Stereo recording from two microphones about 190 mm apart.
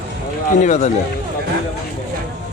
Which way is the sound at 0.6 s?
40° left (ahead or behind).